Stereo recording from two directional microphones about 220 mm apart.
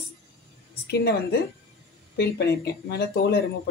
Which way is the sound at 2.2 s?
45° left (ahead or behind).